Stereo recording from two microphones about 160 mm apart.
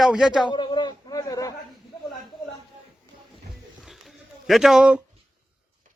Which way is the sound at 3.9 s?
Centre (ahead or behind).